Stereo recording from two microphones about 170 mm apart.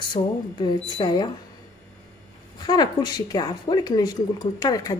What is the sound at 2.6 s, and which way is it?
A woman's voice, 25° left (ahead or behind).